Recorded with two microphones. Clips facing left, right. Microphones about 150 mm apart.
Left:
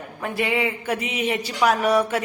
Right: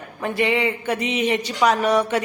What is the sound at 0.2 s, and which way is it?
A man's voice, 5° left (ahead or behind).